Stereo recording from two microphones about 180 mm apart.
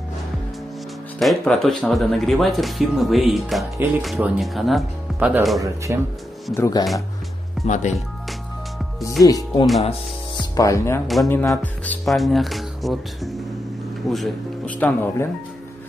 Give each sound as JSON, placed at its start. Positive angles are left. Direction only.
{"t": 1.2, "sound": "speech", "side_deg": 0}
{"t": 6.5, "sound": "speech", "side_deg": 15}
{"t": 7.6, "sound": "speech", "side_deg": 40}
{"t": 9.2, "sound": "speech", "side_deg": 20}
{"t": 14.8, "sound": "speech", "side_deg": 10}